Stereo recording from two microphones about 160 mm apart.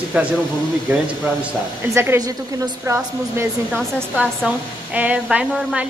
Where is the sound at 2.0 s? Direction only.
20° right (ahead or behind).